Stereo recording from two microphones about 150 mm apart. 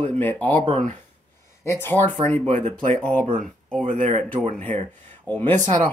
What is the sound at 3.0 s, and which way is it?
Speech, 10° left (ahead or behind).